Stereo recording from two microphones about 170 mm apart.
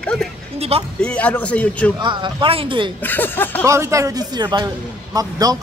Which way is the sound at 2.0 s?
30° right (ahead or behind).